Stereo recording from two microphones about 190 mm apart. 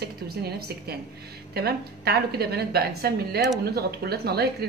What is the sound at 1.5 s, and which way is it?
A woman's voice, 55° right (ahead or behind).